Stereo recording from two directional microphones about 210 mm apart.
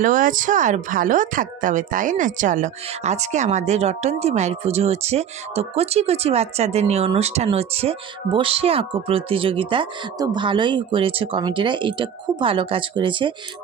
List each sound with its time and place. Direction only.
0.0 s speech: 40° right (ahead or behind); by 13.3 s 25° right (ahead or behind)